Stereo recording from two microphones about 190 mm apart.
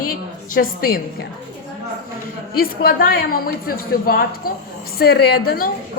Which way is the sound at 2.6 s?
50° left (ahead or behind).